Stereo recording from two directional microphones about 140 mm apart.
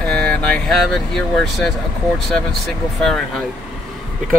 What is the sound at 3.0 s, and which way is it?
Speech, 5° left (ahead or behind).